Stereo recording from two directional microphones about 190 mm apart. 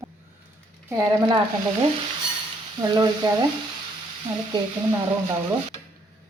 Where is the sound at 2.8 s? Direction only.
20° right (ahead or behind).